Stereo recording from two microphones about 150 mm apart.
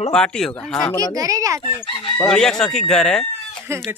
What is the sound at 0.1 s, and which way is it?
Speech, 5° left (ahead or behind).